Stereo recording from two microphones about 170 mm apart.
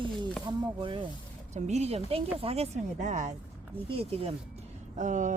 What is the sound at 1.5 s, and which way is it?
A woman's voice, 40° right (ahead or behind).